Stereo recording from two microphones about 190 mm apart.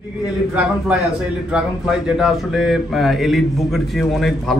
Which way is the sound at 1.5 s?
5° right (ahead or behind).